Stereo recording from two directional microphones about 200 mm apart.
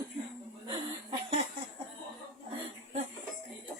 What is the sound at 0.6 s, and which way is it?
Chuckle, 25° right (ahead or behind).